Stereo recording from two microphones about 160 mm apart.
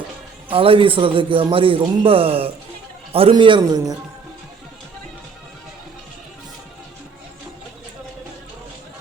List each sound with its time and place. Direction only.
0.5 s a man's voice: 35° right (ahead or behind)